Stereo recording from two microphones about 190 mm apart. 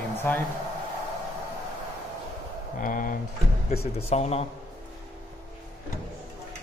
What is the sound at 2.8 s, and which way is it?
Speech, 45° left (ahead or behind).